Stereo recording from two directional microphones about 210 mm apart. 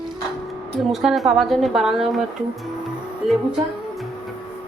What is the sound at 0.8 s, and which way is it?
Speech, centre (ahead or behind).